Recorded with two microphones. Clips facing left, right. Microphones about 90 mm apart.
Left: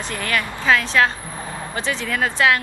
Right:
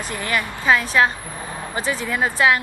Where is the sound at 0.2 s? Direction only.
15° right (ahead or behind).